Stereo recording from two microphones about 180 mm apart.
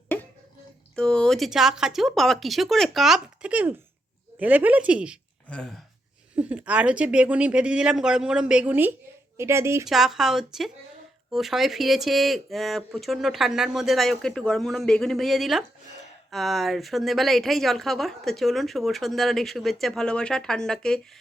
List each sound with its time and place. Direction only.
0.9 s a woman's voice: 5° left (ahead or behind)
5.5 s speech: 5° left (ahead or behind)
6.3 s a woman's voice: 5° right (ahead or behind)
9.8 s speech: centre (ahead or behind)